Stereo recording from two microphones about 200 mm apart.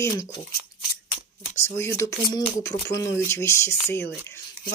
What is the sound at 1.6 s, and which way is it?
Speech, 10° left (ahead or behind).